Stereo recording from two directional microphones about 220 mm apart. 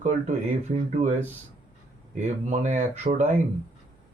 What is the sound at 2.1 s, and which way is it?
Speech, 30° right (ahead or behind).